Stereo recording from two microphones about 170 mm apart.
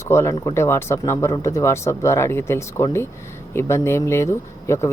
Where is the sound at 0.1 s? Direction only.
15° left (ahead or behind).